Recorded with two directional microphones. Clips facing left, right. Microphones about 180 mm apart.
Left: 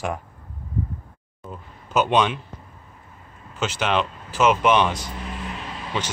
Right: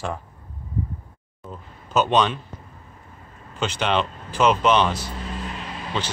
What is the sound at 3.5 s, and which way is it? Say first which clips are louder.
Speech: even; 5° left (ahead or behind).